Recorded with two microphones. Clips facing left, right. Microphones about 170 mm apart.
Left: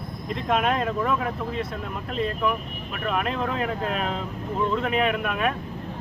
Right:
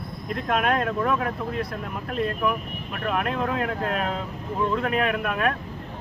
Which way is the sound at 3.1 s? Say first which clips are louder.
Right 1 dB; centre (ahead or behind).